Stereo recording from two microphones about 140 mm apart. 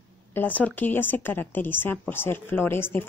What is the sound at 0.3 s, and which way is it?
Speech, 10° left (ahead or behind).